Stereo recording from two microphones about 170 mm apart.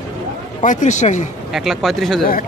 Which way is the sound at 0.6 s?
45° left (ahead or behind).